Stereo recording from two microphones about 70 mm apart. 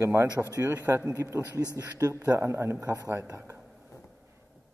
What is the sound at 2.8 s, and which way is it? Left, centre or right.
Speech, right.